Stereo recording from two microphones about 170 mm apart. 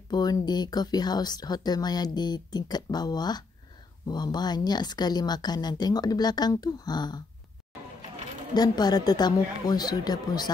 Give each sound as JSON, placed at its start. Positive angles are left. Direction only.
{"t": 0.1, "sound": "speech", "side_deg": 25}
{"t": 8.5, "sound": "speech", "side_deg": 25}